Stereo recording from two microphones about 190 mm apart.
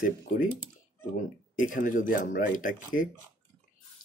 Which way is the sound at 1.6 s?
45° left (ahead or behind).